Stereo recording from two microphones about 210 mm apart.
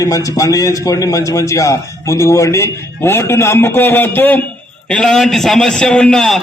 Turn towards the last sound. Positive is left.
turn(degrees=0)  # may be behind; listen again after turning